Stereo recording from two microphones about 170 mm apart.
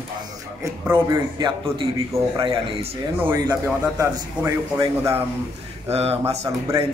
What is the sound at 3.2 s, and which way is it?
A man's voice, 10° right (ahead or behind).